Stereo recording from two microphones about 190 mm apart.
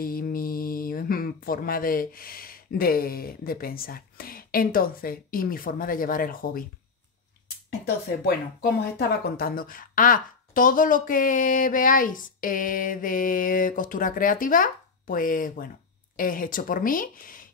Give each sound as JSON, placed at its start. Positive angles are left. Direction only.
{"t": 0.0, "sound": "speech", "side_deg": 50}
{"t": 8.3, "sound": "speech", "side_deg": 55}